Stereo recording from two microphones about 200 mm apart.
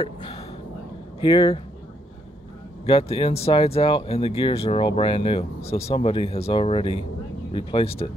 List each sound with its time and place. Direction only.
0.0 s speech: 30° left (ahead or behind)
2.8 s speech: 30° left (ahead or behind)